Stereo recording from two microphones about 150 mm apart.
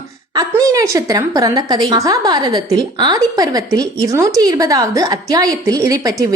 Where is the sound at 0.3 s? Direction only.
25° right (ahead or behind).